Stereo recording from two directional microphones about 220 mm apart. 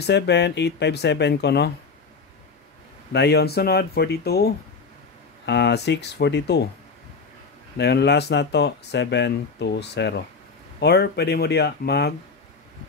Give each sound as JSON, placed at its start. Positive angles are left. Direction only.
{"t": 0.0, "sound": "speech", "side_deg": 50}
{"t": 3.1, "sound": "speech", "side_deg": 50}
{"t": 7.7, "sound": "speech", "side_deg": 50}